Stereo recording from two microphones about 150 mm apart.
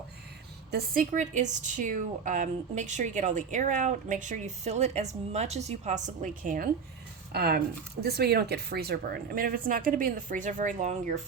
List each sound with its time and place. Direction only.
0.7 s a woman's voice: 80° right; by 6.7 s 65° right (ahead or behind)
7.3 s a woman's voice: 90° right; by 11.2 s 50° right (ahead or behind)